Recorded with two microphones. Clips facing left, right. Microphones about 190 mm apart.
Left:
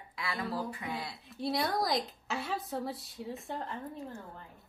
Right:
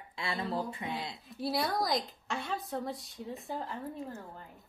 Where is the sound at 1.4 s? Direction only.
Centre (ahead or behind).